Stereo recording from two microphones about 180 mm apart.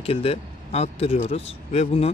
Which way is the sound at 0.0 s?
35° left (ahead or behind).